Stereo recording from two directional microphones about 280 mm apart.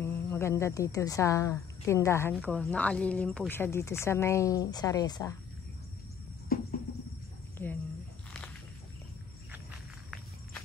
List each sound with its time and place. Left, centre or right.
0.0 s speech: centre
6.5 s cricket: left
7.5 s a sound: centre